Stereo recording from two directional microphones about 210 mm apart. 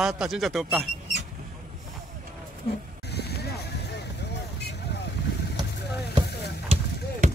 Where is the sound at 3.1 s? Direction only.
50° left (ahead or behind).